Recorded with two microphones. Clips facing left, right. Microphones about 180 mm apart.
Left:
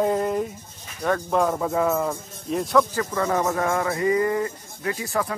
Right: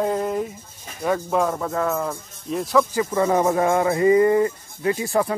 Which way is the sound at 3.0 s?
20° right (ahead or behind).